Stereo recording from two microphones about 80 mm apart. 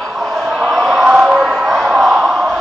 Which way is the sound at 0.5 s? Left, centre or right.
Centre.